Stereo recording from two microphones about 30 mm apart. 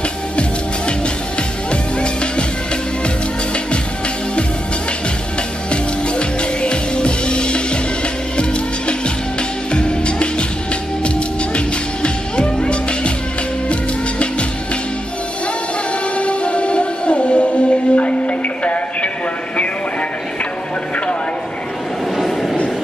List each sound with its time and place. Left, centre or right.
1.7 s music: left
5.7 s music: left
16.2 s music: left
22.1 s a sound: centre